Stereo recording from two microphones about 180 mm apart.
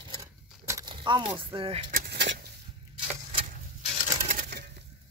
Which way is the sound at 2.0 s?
70° right (ahead or behind).